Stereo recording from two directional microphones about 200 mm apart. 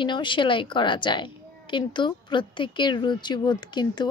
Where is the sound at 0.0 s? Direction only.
25° left (ahead or behind).